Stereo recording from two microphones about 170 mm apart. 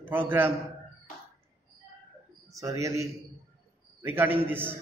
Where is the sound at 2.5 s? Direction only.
20° right (ahead or behind).